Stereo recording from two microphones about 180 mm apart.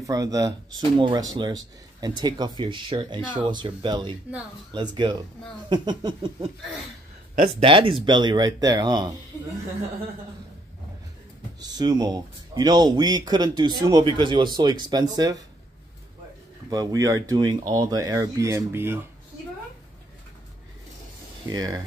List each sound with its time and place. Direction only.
0.0 s speech: 20° right (ahead or behind)
11.6 s speech: 20° right (ahead or behind)
16.7 s speech: 20° right (ahead or behind)
21.5 s speech: 20° right (ahead or behind)